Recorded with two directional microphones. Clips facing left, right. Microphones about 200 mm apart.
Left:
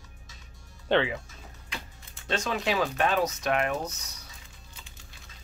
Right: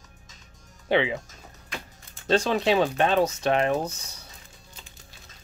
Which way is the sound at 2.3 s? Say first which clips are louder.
Right 7 dB; 35° right (ahead or behind).